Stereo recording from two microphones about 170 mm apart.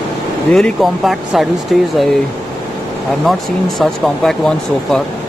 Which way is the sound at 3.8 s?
Centre (ahead or behind).